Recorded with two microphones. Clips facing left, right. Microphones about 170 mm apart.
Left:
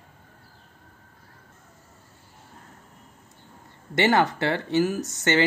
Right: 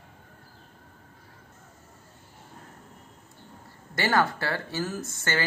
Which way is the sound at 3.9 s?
20° left (ahead or behind).